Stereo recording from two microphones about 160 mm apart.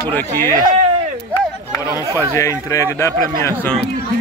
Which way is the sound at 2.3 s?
20° left (ahead or behind).